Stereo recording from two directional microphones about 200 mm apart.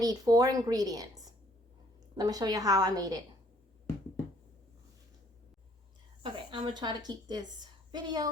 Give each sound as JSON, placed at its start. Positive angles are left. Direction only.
{"t": 0.0, "sound": "a woman's voice", "side_deg": -20}
{"t": 6.2, "sound": "a woman's voice", "side_deg": -25}